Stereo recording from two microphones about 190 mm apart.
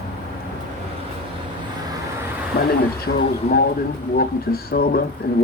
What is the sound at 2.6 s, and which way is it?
Speech, 55° left (ahead or behind).